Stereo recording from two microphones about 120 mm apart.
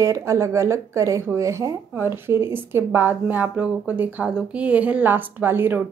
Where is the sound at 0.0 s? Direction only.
25° right (ahead or behind).